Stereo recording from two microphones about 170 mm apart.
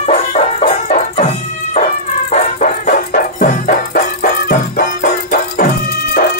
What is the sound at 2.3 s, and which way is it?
Dog, 50° left (ahead or behind).